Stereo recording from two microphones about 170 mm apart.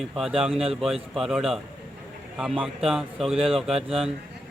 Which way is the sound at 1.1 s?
Centre (ahead or behind).